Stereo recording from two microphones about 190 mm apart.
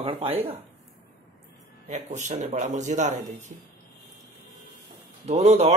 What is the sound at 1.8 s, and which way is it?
Speech, 40° right (ahead or behind).